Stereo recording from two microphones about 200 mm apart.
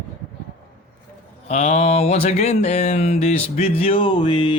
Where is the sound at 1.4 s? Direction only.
35° left (ahead or behind).